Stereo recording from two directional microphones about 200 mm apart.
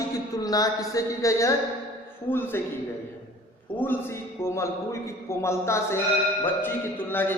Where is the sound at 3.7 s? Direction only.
10° left (ahead or behind).